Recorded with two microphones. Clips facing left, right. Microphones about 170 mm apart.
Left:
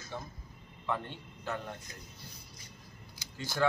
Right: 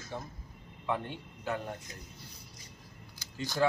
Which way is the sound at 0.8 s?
15° right (ahead or behind).